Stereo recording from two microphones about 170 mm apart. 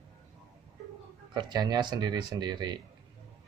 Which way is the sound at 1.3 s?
25° right (ahead or behind).